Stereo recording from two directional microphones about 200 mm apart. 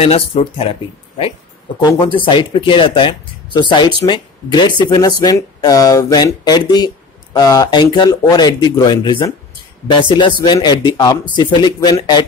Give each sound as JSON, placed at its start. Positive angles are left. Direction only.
{"t": 0.0, "sound": "speech", "side_deg": 30}